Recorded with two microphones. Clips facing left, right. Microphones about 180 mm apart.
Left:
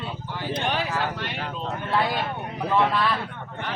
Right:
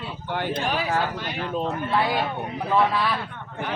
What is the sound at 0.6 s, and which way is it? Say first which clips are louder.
Speech: left 4 dB; 5° right (ahead or behind).